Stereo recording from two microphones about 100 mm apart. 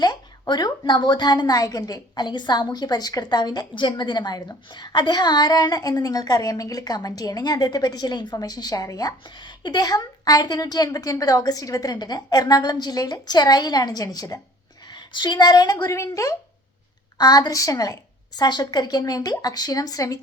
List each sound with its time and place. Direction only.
0.0 s a woman's voice: 45° left (ahead or behind)
14.8 s speech: 50° left (ahead or behind); by 16.3 s 30° left (ahead or behind)
17.2 s a woman's voice: 45° left (ahead or behind)